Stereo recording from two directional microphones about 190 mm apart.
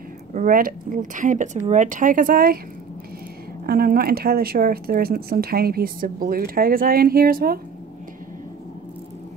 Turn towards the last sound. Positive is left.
turn(degrees=-50)  # may be behind; listen again after turning